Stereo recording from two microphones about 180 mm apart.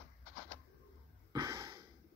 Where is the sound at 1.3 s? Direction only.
25° right (ahead or behind).